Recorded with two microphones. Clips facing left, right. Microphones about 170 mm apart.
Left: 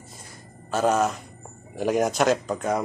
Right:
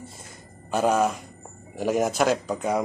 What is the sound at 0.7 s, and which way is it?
Speech, 10° right (ahead or behind).